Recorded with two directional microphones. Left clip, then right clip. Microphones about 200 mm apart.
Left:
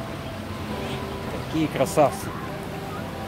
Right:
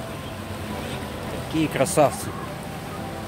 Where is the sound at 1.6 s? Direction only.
20° right (ahead or behind).